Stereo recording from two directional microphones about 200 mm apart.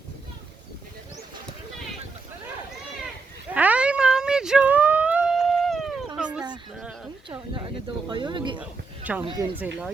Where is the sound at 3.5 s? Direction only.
5° right (ahead or behind).